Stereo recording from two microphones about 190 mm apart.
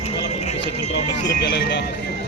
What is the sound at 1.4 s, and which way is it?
Speech, 60° left (ahead or behind).